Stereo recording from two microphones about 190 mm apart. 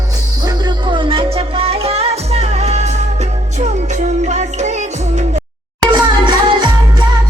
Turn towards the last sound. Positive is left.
turn(degrees=-25)  # may be behind; listen again after turning